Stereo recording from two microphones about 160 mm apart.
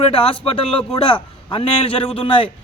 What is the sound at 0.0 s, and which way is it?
A man's voice, 35° left (ahead or behind).